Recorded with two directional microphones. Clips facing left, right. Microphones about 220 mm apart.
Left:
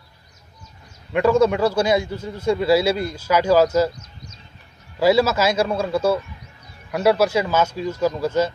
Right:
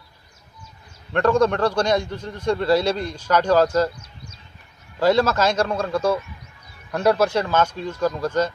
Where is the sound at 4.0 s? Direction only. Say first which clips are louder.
Left 1 dB; 30° right (ahead or behind).